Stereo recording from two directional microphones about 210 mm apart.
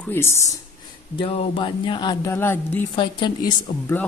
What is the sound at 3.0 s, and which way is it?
Speech, 20° left (ahead or behind).